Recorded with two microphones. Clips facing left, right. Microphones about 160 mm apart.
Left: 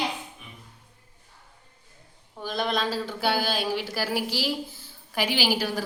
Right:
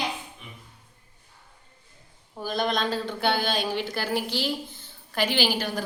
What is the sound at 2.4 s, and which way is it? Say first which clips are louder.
A woman's voice: right 1 dB; centre (ahead or behind).